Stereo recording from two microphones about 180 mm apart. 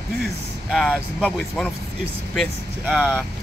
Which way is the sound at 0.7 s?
5° left (ahead or behind).